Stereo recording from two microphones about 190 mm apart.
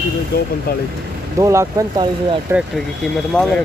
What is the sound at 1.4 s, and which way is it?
Speech, 15° right (ahead or behind).